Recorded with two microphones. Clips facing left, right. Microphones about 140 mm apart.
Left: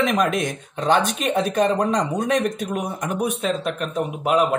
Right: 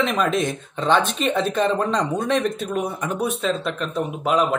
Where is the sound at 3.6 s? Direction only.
45° left (ahead or behind).